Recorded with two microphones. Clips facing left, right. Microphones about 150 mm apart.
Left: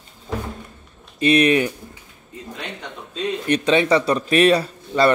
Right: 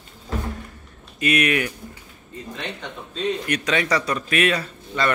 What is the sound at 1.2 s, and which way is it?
Speech, 30° left (ahead or behind).